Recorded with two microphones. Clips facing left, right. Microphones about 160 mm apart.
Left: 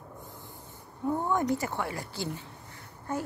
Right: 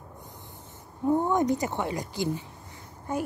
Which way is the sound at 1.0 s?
20° right (ahead or behind).